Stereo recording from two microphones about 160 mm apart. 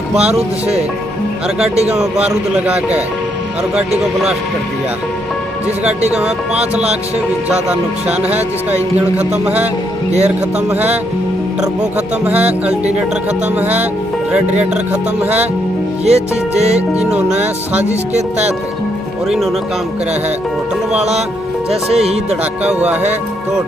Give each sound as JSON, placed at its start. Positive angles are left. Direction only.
{"t": 0.2, "sound": "music", "side_deg": -40}
{"t": 2.2, "sound": "speech", "side_deg": -5}
{"t": 6.1, "sound": "speech", "side_deg": -5}
{"t": 8.1, "sound": "speech", "side_deg": -10}
{"t": 9.4, "sound": "speech", "side_deg": -10}
{"t": 10.7, "sound": "speech", "side_deg": -10}
{"t": 12.3, "sound": "speech", "side_deg": -10}
{"t": 16.1, "sound": "music", "side_deg": -40}
{"t": 17.8, "sound": "music", "side_deg": -45}
{"t": 19.2, "sound": "speech", "side_deg": 0}
{"t": 21.9, "sound": "music", "side_deg": -40}
{"t": 22.4, "sound": "speech", "side_deg": -10}